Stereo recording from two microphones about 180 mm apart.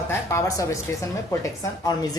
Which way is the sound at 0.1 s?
15° left (ahead or behind).